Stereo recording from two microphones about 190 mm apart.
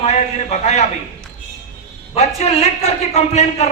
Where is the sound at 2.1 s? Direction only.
35° left (ahead or behind).